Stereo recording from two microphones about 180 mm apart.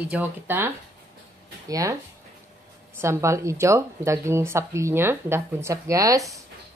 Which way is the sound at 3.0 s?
15° right (ahead or behind).